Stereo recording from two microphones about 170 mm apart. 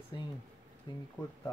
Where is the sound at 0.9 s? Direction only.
25° left (ahead or behind).